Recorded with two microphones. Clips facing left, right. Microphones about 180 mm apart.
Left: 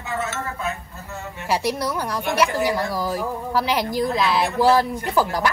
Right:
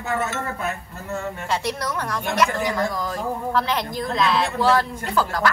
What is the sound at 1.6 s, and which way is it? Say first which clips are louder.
A woman's voice: left 3 dB; centre (ahead or behind).